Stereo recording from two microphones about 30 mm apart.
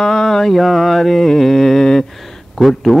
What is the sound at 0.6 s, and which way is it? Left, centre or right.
Mantra, centre.